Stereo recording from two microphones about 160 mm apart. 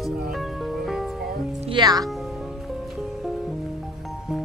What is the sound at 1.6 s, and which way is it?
Speech, 30° right (ahead or behind).